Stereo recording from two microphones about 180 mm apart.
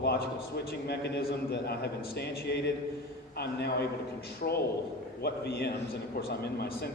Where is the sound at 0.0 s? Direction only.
65° left (ahead or behind).